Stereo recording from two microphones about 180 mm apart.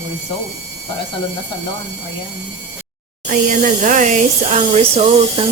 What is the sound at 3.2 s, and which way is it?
Speech, 45° right (ahead or behind).